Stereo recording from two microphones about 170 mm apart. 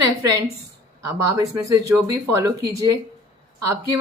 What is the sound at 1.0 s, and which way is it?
A woman's voice, 15° right (ahead or behind).